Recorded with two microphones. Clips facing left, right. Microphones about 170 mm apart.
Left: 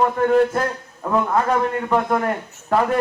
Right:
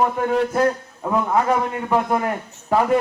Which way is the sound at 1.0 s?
10° right (ahead or behind).